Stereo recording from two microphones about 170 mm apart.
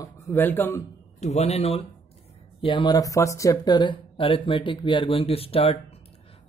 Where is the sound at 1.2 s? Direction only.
40° left (ahead or behind).